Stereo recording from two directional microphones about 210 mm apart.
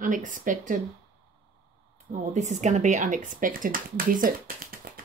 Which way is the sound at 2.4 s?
35° right (ahead or behind).